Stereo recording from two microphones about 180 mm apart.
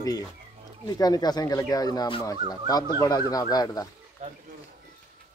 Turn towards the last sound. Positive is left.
turn(degrees=-40)  # may be behind; listen again after turning